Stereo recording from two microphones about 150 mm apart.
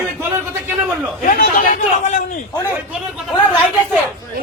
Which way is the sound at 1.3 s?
65° left (ahead or behind).